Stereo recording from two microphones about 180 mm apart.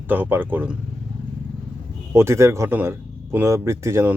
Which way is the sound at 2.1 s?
15° right (ahead or behind).